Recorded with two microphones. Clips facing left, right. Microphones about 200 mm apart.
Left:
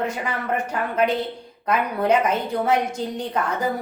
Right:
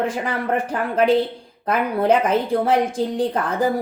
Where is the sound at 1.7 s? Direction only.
30° right (ahead or behind).